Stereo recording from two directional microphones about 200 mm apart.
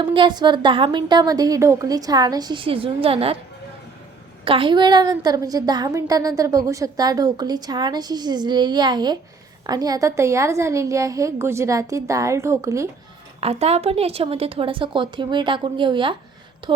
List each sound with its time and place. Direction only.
0.0 s a woman's voice: 25° right (ahead or behind)
4.4 s a woman's voice: 25° right (ahead or behind)
13.4 s a woman's voice: 30° right (ahead or behind)